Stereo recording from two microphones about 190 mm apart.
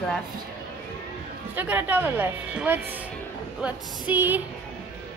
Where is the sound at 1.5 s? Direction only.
10° right (ahead or behind).